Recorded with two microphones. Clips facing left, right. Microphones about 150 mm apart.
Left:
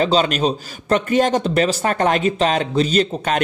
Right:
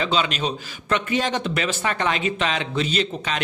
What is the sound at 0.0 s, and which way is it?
Speech, 40° left (ahead or behind).